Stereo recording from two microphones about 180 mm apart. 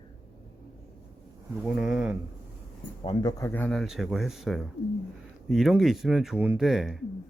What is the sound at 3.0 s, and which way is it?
Speech, 25° left (ahead or behind).